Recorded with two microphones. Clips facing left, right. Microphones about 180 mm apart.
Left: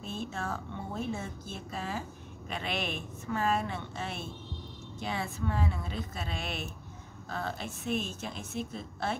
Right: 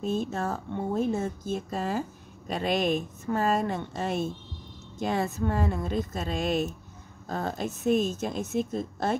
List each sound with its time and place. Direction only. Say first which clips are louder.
0.0 s a woman's voice: right 8 dB; 40° right (ahead or behind)